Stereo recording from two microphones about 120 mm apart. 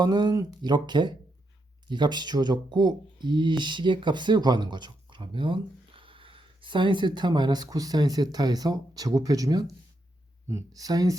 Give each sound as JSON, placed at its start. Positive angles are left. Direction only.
{"t": 0.0, "sound": "speech", "side_deg": -35}